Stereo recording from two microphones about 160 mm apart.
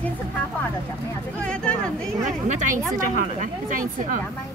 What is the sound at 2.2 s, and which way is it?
A woman's voice, 50° right (ahead or behind).